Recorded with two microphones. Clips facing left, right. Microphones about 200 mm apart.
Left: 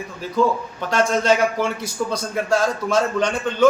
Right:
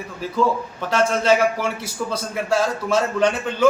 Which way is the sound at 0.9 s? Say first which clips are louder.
Even; 5° right (ahead or behind).